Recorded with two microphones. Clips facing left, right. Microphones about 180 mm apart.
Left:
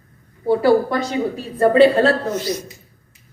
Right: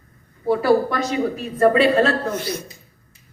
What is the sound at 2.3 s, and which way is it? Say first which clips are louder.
Speech: left 3 dB; 55° right (ahead or behind).